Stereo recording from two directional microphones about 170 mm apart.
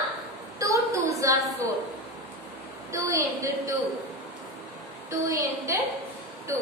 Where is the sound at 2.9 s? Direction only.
20° right (ahead or behind).